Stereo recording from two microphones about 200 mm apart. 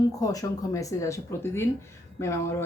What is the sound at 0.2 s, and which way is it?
Speech, 15° left (ahead or behind).